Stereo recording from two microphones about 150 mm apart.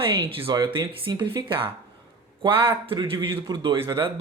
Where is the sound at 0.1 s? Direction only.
35° right (ahead or behind).